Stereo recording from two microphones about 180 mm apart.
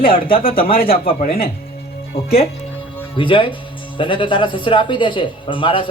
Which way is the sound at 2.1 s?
35° left (ahead or behind).